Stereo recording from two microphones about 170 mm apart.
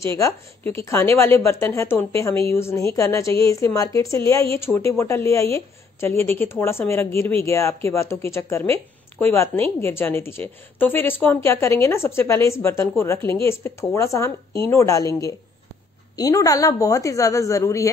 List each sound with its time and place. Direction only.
0.0 s speech: 15° left (ahead or behind)